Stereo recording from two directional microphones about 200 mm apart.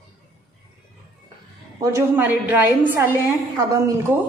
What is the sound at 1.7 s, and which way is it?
A woman's voice, 15° right (ahead or behind).